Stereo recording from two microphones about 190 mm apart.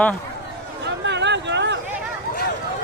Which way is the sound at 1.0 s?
65° right (ahead or behind).